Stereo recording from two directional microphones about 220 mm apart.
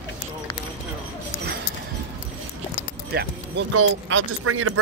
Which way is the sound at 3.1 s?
50° right (ahead or behind).